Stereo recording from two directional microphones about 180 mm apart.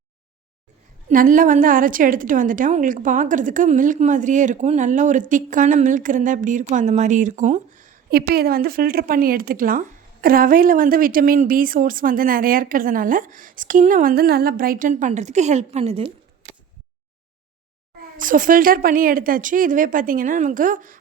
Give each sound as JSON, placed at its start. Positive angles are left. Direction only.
{"t": 1.0, "sound": "a woman's voice", "side_deg": -45}
{"t": 18.2, "sound": "a woman's voice", "side_deg": -50}